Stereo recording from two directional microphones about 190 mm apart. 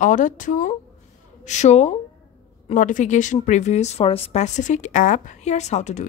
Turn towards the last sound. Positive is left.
turn(degrees=35)  # may be behind; listen again after turning